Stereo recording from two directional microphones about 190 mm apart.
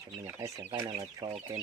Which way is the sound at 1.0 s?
30° right (ahead or behind).